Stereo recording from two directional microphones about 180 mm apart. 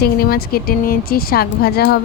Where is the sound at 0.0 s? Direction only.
60° left (ahead or behind).